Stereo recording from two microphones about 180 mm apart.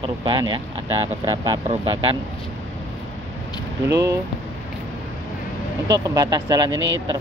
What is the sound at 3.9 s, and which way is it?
Speech, 20° right (ahead or behind).